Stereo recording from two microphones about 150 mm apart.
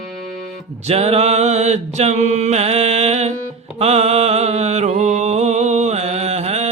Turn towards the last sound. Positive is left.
turn(degrees=-45)  # may be behind; listen again after turning